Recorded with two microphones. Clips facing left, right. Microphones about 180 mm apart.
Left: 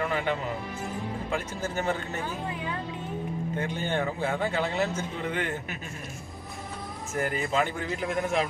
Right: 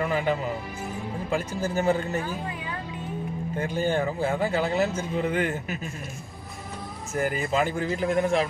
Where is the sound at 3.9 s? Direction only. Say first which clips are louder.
Right 1 dB; 5° right (ahead or behind).